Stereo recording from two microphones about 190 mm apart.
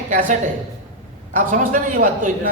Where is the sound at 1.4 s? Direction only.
45° right (ahead or behind).